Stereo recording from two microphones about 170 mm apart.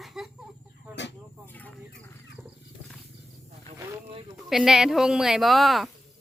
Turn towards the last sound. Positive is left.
turn(degrees=0)  # may be behind; listen again after turning